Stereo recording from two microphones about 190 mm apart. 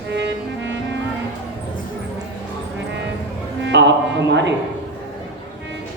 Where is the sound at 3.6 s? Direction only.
70° right (ahead or behind).